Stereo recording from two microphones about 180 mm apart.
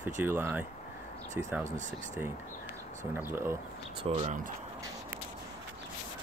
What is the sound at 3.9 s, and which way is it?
Speech, 30° right (ahead or behind).